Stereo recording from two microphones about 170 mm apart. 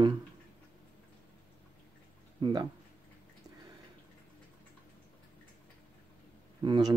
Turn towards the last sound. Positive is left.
turn(degrees=-25)  # may be behind; listen again after turning